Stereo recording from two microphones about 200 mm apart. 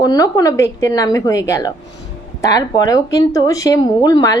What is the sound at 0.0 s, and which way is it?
Speech, 20° left (ahead or behind).